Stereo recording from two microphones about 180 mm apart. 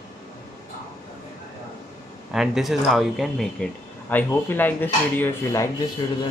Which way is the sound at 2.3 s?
Centre (ahead or behind).